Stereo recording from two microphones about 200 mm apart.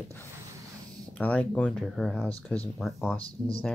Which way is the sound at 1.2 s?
5° left (ahead or behind).